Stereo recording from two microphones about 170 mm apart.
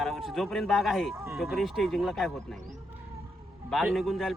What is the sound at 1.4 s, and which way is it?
Speech, centre (ahead or behind).